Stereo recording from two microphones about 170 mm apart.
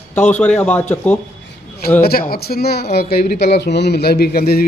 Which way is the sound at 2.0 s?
65° left (ahead or behind).